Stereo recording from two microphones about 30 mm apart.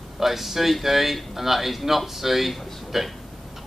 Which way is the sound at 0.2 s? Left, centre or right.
Centre.